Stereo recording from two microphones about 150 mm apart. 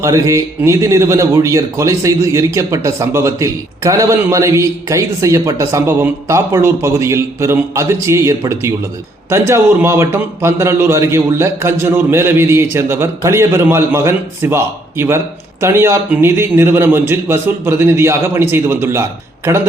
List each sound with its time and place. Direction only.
0.0 s a man's voice: 20° right (ahead or behind)